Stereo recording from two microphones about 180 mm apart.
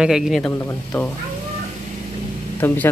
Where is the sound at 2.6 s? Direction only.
10° left (ahead or behind).